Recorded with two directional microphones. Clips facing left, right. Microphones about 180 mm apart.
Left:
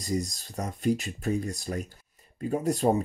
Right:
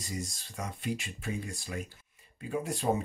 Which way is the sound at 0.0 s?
40° left (ahead or behind).